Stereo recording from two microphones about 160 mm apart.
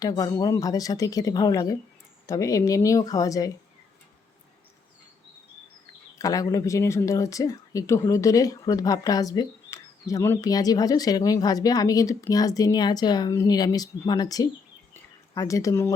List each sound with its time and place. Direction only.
0.0 s speech: 25° left (ahead or behind)
6.1 s speech: 20° left (ahead or behind)
14.9 s a sound: 20° left (ahead or behind)